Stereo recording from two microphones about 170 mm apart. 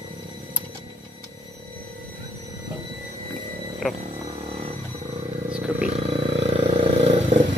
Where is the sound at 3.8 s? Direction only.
Centre (ahead or behind).